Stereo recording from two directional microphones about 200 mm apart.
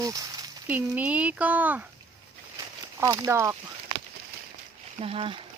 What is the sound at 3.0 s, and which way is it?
Speech, 15° right (ahead or behind).